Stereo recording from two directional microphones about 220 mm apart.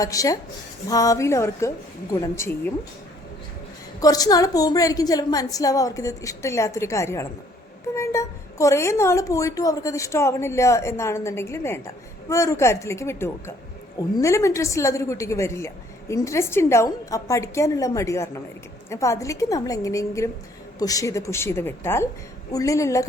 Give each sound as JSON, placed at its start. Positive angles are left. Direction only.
{"t": 0.0, "sound": "a woman's voice", "side_deg": 15}
{"t": 4.0, "sound": "a woman's voice", "side_deg": 15}